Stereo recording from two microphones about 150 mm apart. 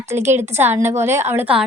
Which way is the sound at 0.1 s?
15° right (ahead or behind).